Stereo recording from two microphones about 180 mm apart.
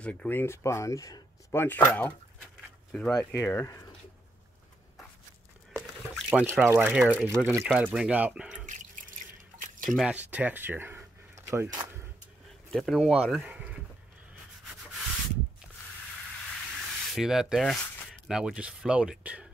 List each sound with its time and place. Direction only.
0.0 s speech: 5° left (ahead or behind)
3.3 s speech: 15° left (ahead or behind)
6.1 s speech: 5° right (ahead or behind)
8.6 s drip: 45° right (ahead or behind)
9.8 s speech: 5° right (ahead or behind); by 11.9 s 20° right (ahead or behind)
12.7 s speech: centre (ahead or behind)
16.4 s a sound: centre (ahead or behind)